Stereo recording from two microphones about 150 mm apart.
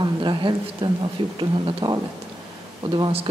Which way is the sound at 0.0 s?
30° right (ahead or behind).